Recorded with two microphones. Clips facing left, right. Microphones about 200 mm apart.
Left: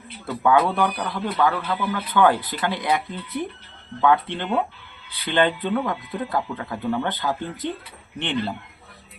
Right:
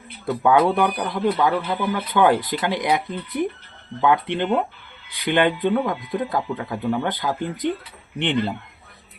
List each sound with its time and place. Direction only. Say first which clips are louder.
0.4 s speech: right 2 dB; 15° right (ahead or behind)